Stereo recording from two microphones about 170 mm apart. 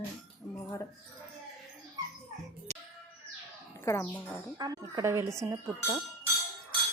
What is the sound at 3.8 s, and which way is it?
Speech, 15° left (ahead or behind).